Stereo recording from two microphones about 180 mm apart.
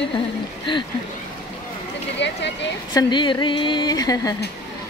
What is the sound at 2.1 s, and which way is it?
Speech, 75° left (ahead or behind).